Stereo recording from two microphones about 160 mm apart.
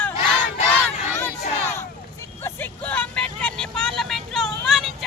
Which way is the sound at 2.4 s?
10° left (ahead or behind).